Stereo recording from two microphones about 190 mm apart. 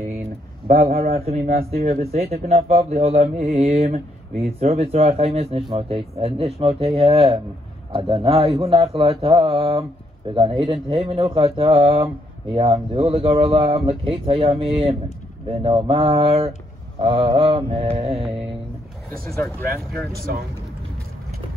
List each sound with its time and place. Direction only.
0.7 s a man's voice: 35° right (ahead or behind)
0.9 s a man's voice: 50° right (ahead or behind)
1.2 s speech: 35° right (ahead or behind)